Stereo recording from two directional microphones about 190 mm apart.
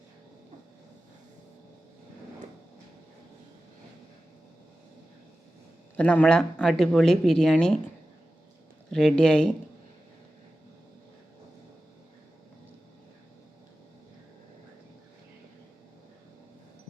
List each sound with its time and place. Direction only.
6.0 s speech: 5° left (ahead or behind)
8.9 s speech: 5° left (ahead or behind)